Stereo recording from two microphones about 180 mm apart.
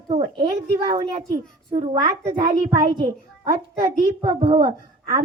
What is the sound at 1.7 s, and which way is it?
A child's voice, 25° right (ahead or behind).